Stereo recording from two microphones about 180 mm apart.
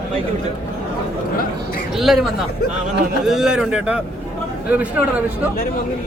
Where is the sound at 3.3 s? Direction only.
5° right (ahead or behind).